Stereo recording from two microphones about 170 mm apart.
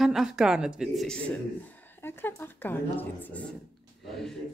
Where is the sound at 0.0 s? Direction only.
Centre (ahead or behind).